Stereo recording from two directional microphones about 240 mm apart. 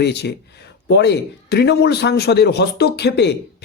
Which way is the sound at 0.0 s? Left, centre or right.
Left.